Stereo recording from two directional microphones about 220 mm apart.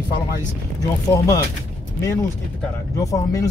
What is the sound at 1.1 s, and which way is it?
Speech, 15° left (ahead or behind).